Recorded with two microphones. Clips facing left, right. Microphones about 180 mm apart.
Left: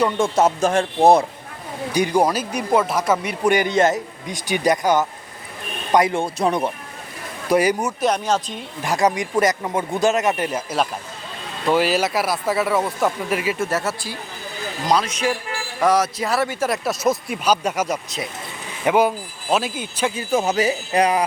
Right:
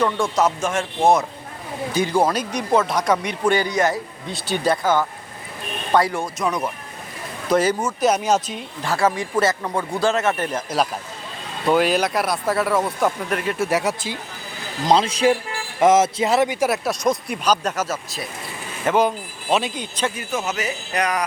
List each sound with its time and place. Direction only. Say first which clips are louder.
0.2 s speech: left 3 dB; 25° left (ahead or behind)
1.9 s speech: left 1 dB; 15° left (ahead or behind)
3.5 s speech: left 3 dB; 20° left (ahead or behind)
7.4 s speech: left 1 dB; 10° left (ahead or behind)
8.0 s speech: right 2 dB; 5° right (ahead or behind)
8.8 s speech: left 1 dB; 15° left (ahead or behind)
13.6 s speech: right 2 dB; 15° right (ahead or behind)
14.8 s a man's voice: right 4 dB; 25° right (ahead or behind)
16.6 s speech: even; centre (ahead or behind)
20.1 s speech: left 6 dB; 30° left (ahead or behind)